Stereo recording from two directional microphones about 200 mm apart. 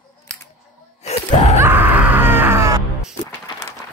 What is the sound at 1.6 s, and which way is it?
Screaming, 10° right (ahead or behind).